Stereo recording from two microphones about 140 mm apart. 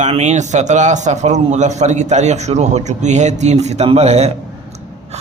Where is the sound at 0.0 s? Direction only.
55° right (ahead or behind).